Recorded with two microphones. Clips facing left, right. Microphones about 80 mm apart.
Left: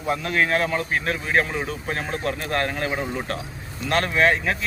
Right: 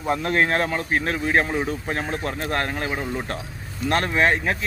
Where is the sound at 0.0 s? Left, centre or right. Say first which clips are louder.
Right 2 dB; right.